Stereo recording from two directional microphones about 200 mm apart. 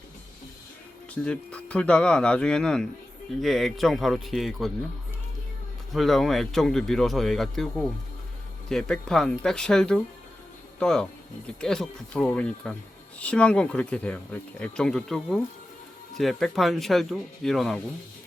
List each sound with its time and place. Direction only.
1.1 s speech: 5° left (ahead or behind)
5.9 s speech: centre (ahead or behind)